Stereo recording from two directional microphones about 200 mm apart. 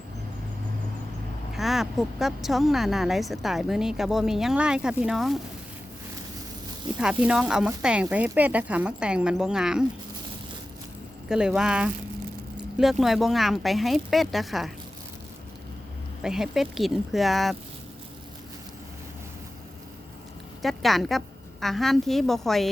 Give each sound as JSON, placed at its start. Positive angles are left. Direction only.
{"t": 1.5, "sound": "a woman's voice", "side_deg": 0}
{"t": 7.0, "sound": "a woman's voice", "side_deg": -5}
{"t": 11.3, "sound": "a woman's voice", "side_deg": -5}
{"t": 16.2, "sound": "a woman's voice", "side_deg": 0}
{"t": 20.6, "sound": "a woman's voice", "side_deg": 0}